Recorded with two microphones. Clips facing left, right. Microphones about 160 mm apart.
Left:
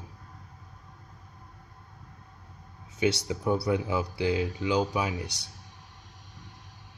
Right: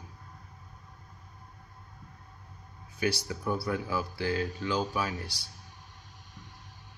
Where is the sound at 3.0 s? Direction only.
20° left (ahead or behind).